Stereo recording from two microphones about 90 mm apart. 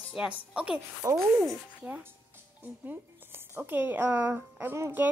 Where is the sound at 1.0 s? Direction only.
40° right (ahead or behind).